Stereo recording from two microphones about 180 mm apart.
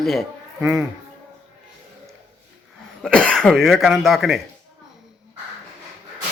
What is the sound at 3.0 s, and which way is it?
A man's voice, 5° left (ahead or behind).